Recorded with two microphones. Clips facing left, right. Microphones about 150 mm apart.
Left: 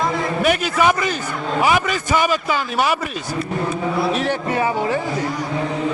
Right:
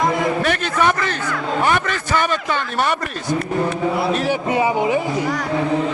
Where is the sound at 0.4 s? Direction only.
10° left (ahead or behind).